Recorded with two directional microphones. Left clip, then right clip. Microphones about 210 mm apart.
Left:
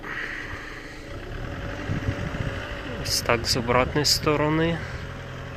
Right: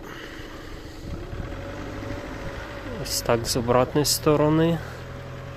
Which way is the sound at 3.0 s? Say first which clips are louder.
Left 1 dB; 20° right (ahead or behind).